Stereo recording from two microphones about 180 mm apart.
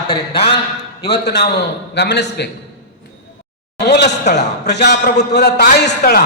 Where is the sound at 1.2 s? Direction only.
65° left (ahead or behind).